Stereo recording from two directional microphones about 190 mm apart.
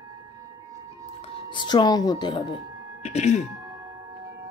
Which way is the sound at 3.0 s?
35° left (ahead or behind).